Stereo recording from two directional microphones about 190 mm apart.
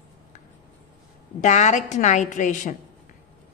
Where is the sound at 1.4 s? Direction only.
40° left (ahead or behind).